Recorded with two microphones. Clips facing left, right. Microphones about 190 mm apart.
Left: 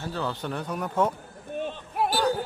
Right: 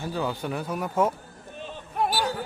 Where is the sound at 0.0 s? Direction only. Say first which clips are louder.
Right 2 dB; 10° right (ahead or behind).